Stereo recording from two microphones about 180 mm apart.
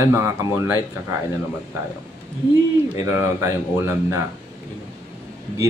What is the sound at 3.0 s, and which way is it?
Mantra, 15° right (ahead or behind).